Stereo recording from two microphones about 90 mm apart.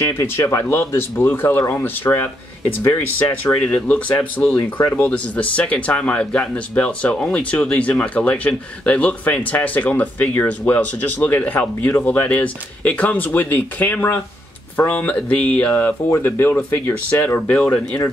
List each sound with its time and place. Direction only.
0.0 s speech: 30° left (ahead or behind)
3.6 s speech: 15° left (ahead or behind)
4.7 s speech: 25° left (ahead or behind)
15.7 s speech: 25° left (ahead or behind)